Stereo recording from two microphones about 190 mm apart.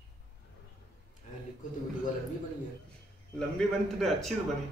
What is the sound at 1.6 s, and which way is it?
Speech, 45° left (ahead or behind).